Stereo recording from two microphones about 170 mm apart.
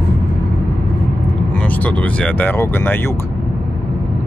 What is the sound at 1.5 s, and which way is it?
Speech, 10° left (ahead or behind).